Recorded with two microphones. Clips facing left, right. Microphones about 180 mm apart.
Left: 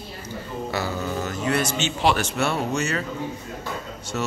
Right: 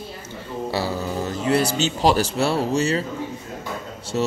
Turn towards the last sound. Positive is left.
turn(degrees=-30)  # may be behind; listen again after turning